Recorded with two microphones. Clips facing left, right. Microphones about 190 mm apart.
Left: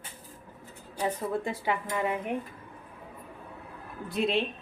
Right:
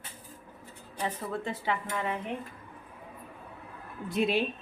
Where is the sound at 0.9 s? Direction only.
10° left (ahead or behind).